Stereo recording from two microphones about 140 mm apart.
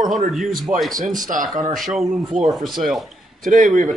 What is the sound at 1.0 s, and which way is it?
Speech, 70° right (ahead or behind).